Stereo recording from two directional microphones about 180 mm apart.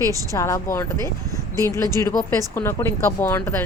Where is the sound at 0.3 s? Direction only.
15° left (ahead or behind).